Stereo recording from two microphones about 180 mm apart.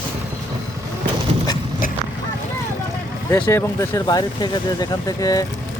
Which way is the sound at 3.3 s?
10° left (ahead or behind).